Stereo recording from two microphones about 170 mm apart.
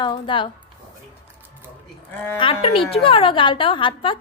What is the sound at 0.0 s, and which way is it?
Speech, 30° left (ahead or behind).